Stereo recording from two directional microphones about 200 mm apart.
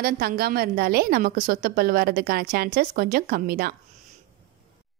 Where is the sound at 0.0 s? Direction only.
50° right (ahead or behind).